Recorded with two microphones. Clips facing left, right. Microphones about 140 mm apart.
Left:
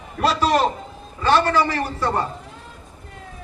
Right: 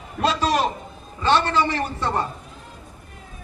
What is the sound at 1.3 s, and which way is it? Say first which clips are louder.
Speech: left 2 dB; 25° right (ahead or behind).